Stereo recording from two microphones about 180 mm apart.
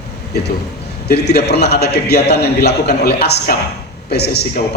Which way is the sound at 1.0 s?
65° left (ahead or behind).